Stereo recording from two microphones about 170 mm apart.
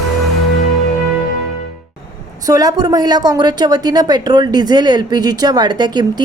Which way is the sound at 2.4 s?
20° right (ahead or behind).